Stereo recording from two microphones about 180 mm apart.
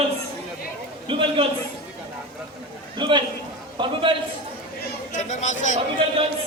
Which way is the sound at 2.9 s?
25° right (ahead or behind).